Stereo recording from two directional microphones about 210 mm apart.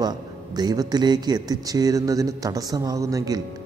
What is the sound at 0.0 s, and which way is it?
Speech, 20° right (ahead or behind).